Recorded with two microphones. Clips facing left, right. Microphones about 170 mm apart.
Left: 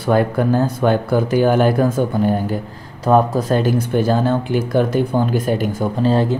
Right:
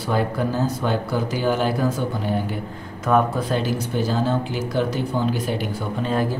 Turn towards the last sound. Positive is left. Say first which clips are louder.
# left 6 dB
turn(degrees=25)  # may be behind; listen again after turning